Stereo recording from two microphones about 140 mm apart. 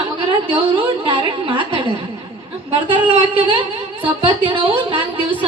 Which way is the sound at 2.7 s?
35° right (ahead or behind).